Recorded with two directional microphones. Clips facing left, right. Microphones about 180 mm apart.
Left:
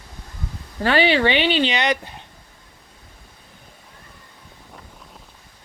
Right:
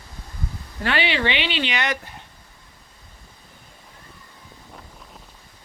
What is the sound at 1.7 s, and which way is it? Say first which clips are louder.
Speech: left 4 dB; 20° left (ahead or behind).